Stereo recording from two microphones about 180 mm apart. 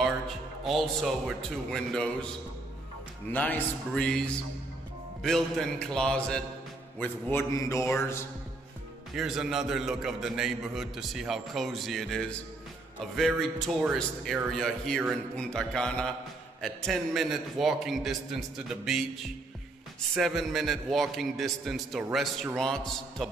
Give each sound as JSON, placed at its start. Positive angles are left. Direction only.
{"t": 0.7, "sound": "a man's voice", "side_deg": 0}
{"t": 3.3, "sound": "music", "side_deg": 10}
{"t": 5.2, "sound": "a man's voice", "side_deg": 5}
{"t": 7.0, "sound": "music", "side_deg": 10}
{"t": 9.1, "sound": "a man's voice", "side_deg": -5}
{"t": 20.2, "sound": "a man's voice", "side_deg": 0}